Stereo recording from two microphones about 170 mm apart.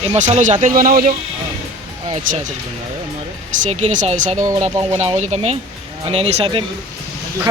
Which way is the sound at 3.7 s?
45° right (ahead or behind).